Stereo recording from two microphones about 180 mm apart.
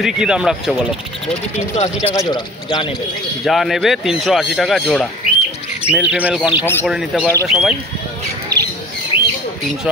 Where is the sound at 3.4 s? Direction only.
Centre (ahead or behind).